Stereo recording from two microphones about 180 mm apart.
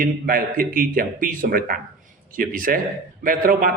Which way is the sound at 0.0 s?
50° right (ahead or behind).